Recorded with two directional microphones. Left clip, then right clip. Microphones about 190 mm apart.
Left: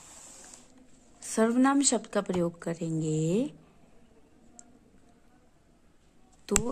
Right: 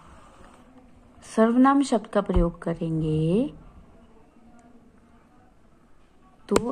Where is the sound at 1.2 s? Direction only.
20° left (ahead or behind).